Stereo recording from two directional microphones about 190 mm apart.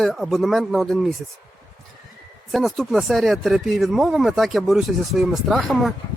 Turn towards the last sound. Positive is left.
turn(degrees=0)  # may be behind; listen again after turning